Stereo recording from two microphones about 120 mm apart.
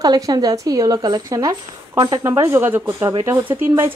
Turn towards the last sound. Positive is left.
turn(degrees=-20)  # may be behind; listen again after turning